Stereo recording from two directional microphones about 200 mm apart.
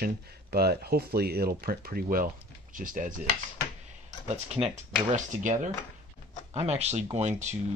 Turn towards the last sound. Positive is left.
turn(degrees=-35)  # may be behind; listen again after turning